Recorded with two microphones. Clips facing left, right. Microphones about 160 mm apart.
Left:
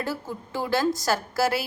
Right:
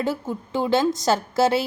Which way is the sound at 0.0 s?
20° right (ahead or behind).